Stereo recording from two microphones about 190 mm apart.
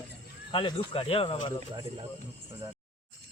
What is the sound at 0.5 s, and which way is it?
Speech, 25° left (ahead or behind).